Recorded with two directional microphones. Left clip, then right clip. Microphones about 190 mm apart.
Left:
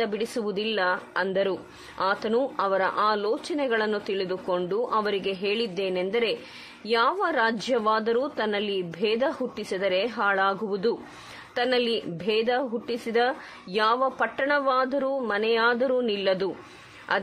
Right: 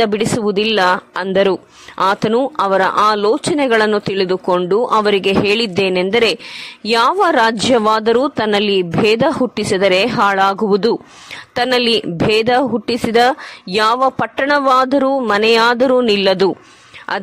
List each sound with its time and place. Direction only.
0.0 s a man's voice: 35° right (ahead or behind)